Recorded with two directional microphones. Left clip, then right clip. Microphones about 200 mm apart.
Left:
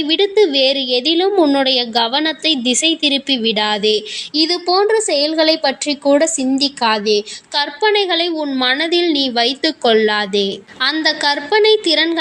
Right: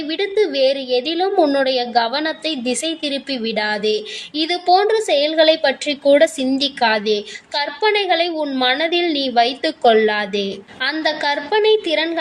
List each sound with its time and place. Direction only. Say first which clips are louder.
0.1 s a woman's voice: left 5 dB; 25° left (ahead or behind)